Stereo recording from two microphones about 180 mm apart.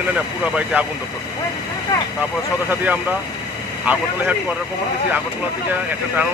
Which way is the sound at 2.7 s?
10° right (ahead or behind).